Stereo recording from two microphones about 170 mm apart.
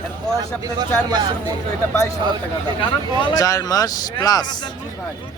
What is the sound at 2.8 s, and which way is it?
Speech, 25° left (ahead or behind).